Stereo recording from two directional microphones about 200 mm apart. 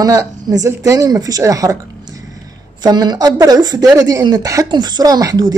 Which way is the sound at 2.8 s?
20° right (ahead or behind).